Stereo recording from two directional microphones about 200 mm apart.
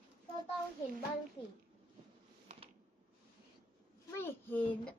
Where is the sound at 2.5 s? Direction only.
35° right (ahead or behind).